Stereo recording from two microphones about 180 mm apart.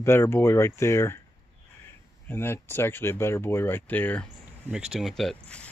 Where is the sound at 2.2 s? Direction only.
15° left (ahead or behind).